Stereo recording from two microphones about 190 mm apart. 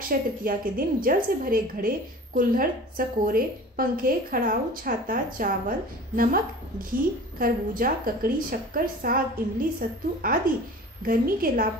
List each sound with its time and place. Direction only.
0.1 s a woman's voice: 50° right (ahead or behind)